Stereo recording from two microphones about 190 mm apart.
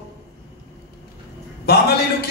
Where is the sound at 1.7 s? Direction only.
60° left (ahead or behind).